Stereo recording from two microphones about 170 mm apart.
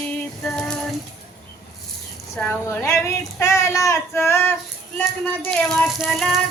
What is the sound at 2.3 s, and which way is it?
Speech, 10° left (ahead or behind).